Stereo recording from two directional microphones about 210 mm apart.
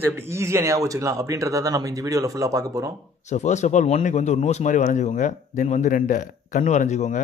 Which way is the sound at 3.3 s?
35° left (ahead or behind).